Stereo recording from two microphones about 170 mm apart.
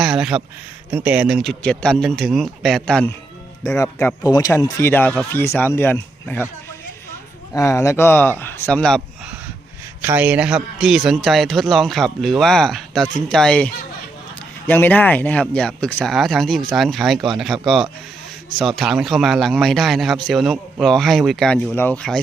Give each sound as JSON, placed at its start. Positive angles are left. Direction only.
{"t": 0.0, "sound": "a man's voice", "side_deg": -5}
{"t": 3.8, "sound": "speech", "side_deg": 20}
{"t": 7.5, "sound": "a man's voice", "side_deg": 15}
{"t": 10.0, "sound": "a man's voice", "side_deg": -10}
{"t": 14.7, "sound": "a man's voice", "side_deg": 10}
{"t": 18.6, "sound": "a man's voice", "side_deg": 0}